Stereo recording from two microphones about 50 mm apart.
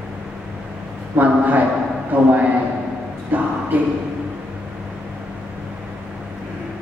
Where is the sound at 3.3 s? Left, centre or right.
Right.